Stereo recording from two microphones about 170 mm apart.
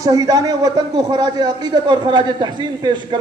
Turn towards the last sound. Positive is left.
turn(degrees=-25)  # may be behind; listen again after turning